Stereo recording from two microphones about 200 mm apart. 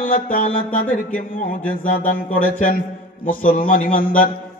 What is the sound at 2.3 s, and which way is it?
Mantra, 45° left (ahead or behind).